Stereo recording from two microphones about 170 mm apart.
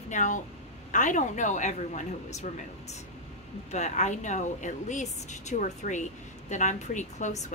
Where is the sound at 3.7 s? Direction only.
45° left (ahead or behind).